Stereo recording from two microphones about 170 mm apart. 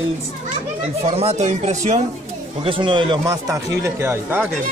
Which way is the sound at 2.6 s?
30° right (ahead or behind).